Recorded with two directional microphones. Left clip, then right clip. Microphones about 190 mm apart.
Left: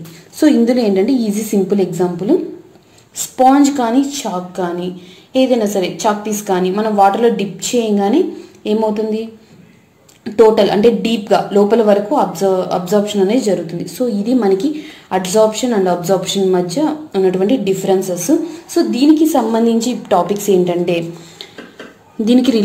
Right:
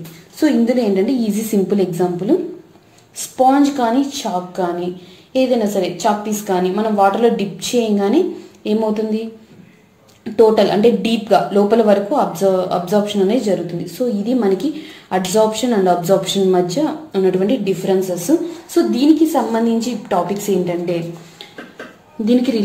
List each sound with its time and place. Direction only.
0.4 s speech: 25° left (ahead or behind)
3.3 s a woman's voice: 25° left (ahead or behind)
10.2 s speech: 20° left (ahead or behind)
19.3 s a woman's voice: 30° left (ahead or behind)